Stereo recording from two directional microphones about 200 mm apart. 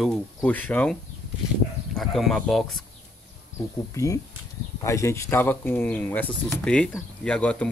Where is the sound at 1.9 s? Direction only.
Centre (ahead or behind).